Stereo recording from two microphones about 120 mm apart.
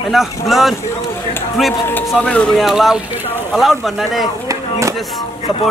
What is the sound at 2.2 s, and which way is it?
Speech, 10° left (ahead or behind).